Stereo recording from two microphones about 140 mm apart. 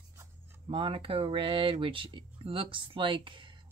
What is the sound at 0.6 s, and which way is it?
Speech, 40° right (ahead or behind).